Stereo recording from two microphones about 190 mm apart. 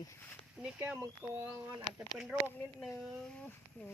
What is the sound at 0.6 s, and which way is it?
Speech, 5° right (ahead or behind).